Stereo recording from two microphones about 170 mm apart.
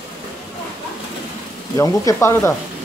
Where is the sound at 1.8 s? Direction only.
15° left (ahead or behind).